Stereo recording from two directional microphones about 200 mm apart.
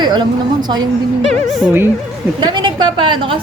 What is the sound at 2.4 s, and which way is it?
A woman's voice, 25° right (ahead or behind).